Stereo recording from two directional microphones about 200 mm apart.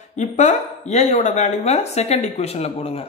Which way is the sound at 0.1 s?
35° left (ahead or behind).